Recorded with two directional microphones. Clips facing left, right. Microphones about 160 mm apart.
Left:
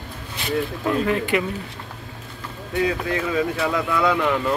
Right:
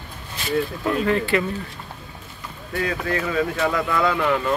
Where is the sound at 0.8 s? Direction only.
10° left (ahead or behind).